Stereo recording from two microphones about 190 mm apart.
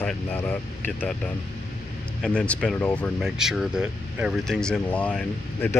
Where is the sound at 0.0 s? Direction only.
5° left (ahead or behind).